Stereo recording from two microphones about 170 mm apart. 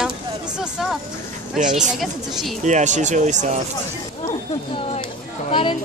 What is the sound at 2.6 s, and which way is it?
Speech, 45° right (ahead or behind).